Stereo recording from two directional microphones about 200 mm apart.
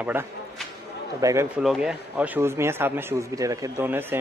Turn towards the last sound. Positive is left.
turn(degrees=-10)  # may be behind; listen again after turning